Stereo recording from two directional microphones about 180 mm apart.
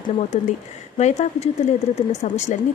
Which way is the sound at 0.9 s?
40° left (ahead or behind).